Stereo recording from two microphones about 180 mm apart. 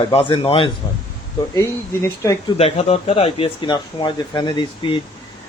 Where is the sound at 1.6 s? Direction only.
15° left (ahead or behind).